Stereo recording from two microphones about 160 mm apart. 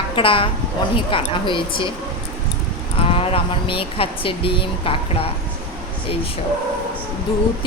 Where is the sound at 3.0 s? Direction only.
35° left (ahead or behind).